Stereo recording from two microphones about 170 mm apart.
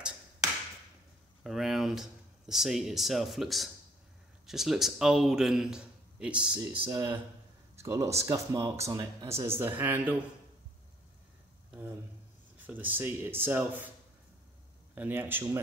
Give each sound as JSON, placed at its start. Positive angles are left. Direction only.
{"t": 1.4, "sound": "a man's voice", "side_deg": 0}
{"t": 6.9, "sound": "speech", "side_deg": -20}
{"t": 11.7, "sound": "a sound", "side_deg": -10}
{"t": 12.5, "sound": "speech", "side_deg": -10}
{"t": 15.0, "sound": "speech", "side_deg": -10}